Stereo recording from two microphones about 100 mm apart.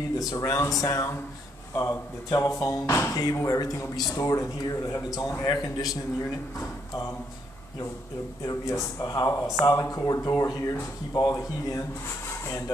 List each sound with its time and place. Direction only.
0.2 s speech: 35° left (ahead or behind)
8.5 s speech: 35° left (ahead or behind)